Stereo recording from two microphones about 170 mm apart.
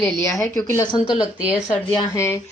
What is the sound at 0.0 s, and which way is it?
A woman's voice, 15° left (ahead or behind).